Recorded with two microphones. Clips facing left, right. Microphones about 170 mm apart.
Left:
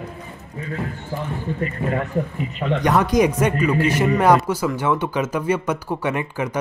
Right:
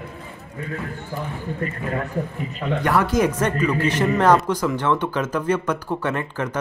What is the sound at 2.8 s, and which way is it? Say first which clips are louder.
Speech: left 2 dB; 15° left (ahead or behind).